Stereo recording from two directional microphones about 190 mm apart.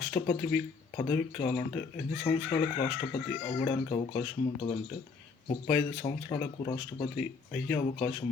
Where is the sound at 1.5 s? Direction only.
25° left (ahead or behind).